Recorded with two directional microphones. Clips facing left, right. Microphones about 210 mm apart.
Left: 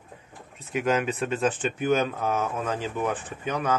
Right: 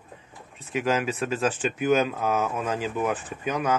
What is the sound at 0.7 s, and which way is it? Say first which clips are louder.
Speech: even; centre (ahead or behind).